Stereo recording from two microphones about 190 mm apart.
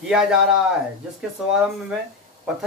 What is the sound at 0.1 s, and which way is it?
Speech, 5° right (ahead or behind).